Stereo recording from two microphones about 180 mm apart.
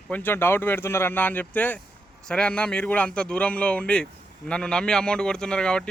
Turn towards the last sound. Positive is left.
turn(degrees=5)  # may be behind; listen again after turning